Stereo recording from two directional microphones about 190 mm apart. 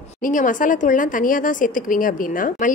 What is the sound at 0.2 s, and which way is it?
Speech, 45° left (ahead or behind).